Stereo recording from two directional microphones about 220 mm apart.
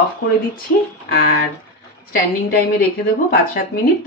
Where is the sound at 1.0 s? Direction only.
45° left (ahead or behind).